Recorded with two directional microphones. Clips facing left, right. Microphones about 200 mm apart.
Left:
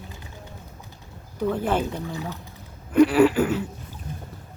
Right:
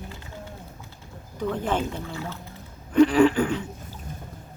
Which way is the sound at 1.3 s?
10° left (ahead or behind).